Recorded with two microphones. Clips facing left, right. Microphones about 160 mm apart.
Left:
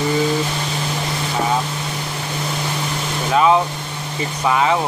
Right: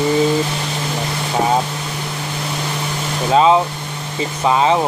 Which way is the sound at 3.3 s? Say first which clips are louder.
Right 2 dB; 25° right (ahead or behind).